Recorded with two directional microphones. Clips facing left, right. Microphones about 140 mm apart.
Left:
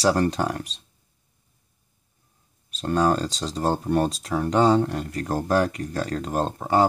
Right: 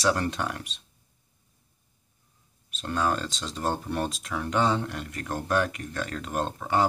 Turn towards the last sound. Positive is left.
turn(degrees=35)  # may be behind; listen again after turning